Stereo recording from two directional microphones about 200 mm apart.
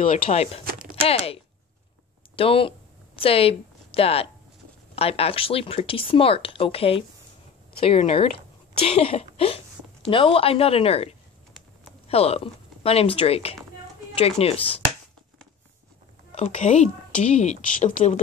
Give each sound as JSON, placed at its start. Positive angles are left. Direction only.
{"t": 0.0, "sound": "a woman's voice", "side_deg": 35}
{"t": 16.3, "sound": "a woman's voice", "side_deg": 30}